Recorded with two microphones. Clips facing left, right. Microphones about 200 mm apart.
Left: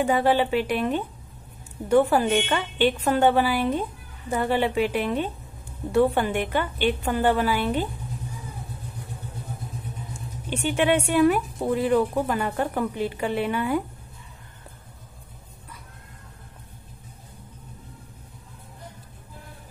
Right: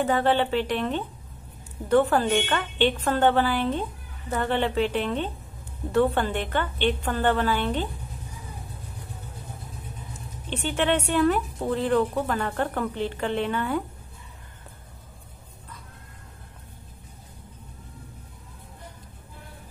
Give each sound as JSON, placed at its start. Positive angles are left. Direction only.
{"t": 0.0, "sound": "speech", "side_deg": 10}
{"t": 10.5, "sound": "speech", "side_deg": 10}